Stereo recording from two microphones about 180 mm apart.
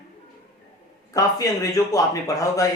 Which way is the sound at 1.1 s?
20° left (ahead or behind).